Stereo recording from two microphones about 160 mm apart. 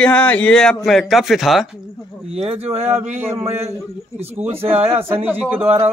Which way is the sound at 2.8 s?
10° right (ahead or behind).